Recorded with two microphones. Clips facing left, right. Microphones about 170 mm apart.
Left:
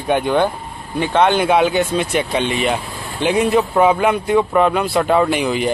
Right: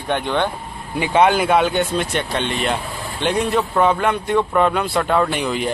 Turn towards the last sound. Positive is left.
turn(degrees=0)  # may be behind; listen again after turning